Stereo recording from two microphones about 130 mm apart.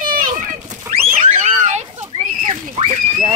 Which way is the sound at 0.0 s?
90° right.